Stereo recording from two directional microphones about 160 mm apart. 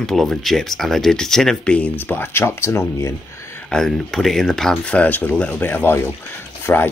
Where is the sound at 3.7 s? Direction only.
Centre (ahead or behind).